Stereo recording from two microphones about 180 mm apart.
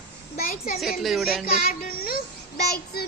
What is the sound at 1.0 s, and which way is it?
Speech, centre (ahead or behind).